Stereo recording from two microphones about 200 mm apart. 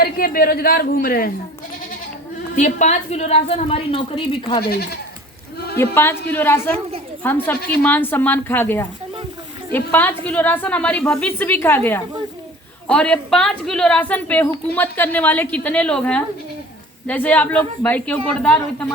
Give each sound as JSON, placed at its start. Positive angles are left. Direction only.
{"t": 0.0, "sound": "a woman's voice", "side_deg": 50}
{"t": 2.6, "sound": "a woman's voice", "side_deg": 40}
{"t": 4.7, "sound": "a woman's voice", "side_deg": 55}
{"t": 5.8, "sound": "a woman's voice", "side_deg": 10}